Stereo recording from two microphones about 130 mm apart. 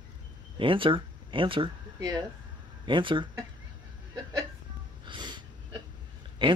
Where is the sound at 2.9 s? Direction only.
40° right (ahead or behind).